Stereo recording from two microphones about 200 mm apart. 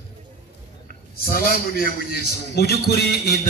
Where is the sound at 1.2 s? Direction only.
50° left (ahead or behind).